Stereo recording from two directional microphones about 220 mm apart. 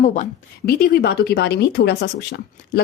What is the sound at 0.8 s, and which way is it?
Speech, 45° left (ahead or behind).